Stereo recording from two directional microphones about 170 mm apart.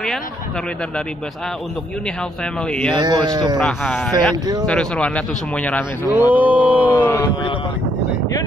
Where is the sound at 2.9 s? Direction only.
25° right (ahead or behind).